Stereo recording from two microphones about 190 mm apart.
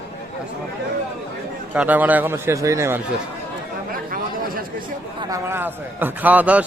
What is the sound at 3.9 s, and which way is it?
Chatter, 50° right (ahead or behind).